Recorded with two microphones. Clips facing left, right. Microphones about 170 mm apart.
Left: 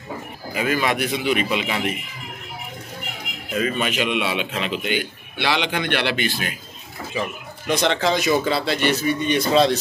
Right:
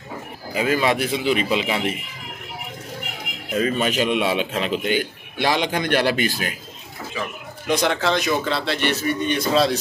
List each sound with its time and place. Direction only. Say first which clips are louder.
0.6 s speech: right 2 dB; 30° right (ahead or behind)
3.5 s a man's voice: right 2 dB; 35° right (ahead or behind)
7.6 s speech: even; 10° right (ahead or behind)
8.1 s a man's voice: left 2 dB; 5° left (ahead or behind)